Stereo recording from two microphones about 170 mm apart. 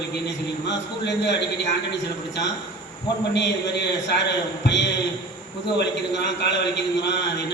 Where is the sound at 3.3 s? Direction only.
90° left.